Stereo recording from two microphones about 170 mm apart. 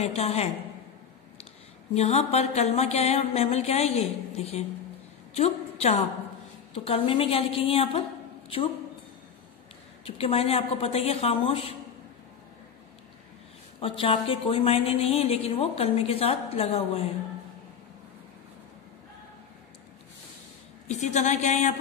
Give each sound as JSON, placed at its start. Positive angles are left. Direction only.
{"t": 0.0, "sound": "a woman's voice", "side_deg": 35}
{"t": 2.0, "sound": "a woman's voice", "side_deg": 40}
{"t": 10.0, "sound": "a woman's voice", "side_deg": 35}
{"t": 13.7, "sound": "a woman's voice", "side_deg": 35}
{"t": 20.8, "sound": "a woman's voice", "side_deg": 40}